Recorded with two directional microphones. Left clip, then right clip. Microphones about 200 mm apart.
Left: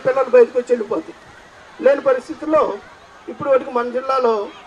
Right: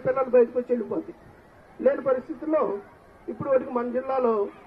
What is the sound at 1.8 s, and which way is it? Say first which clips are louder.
A man's voice: left 8 dB; 55° left (ahead or behind).